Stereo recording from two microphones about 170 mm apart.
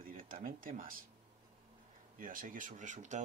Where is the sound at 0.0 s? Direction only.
55° right (ahead or behind).